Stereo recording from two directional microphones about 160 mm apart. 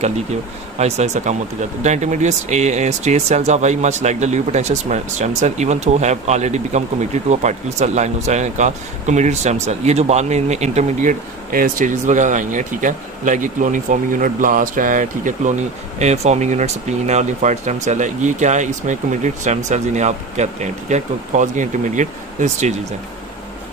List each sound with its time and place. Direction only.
0.7 s speech: 45° right (ahead or behind)